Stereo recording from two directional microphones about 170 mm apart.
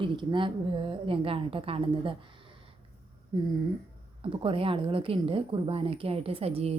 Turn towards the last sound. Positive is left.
turn(degrees=-35)  # may be behind; listen again after turning